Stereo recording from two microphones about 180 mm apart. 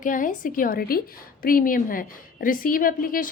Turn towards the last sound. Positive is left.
turn(degrees=50)  # may be behind; listen again after turning